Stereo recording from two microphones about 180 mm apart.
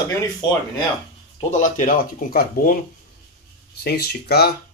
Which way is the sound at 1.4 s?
40° left (ahead or behind).